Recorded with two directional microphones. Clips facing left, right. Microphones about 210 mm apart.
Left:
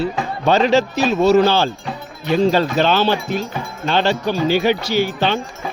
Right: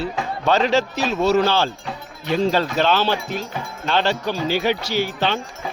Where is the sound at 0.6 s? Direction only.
5° left (ahead or behind).